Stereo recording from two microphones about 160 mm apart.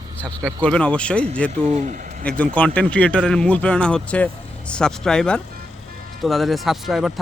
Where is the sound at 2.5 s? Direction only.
10° left (ahead or behind).